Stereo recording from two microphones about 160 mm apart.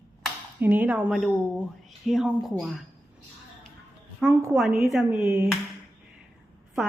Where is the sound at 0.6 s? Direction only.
10° right (ahead or behind).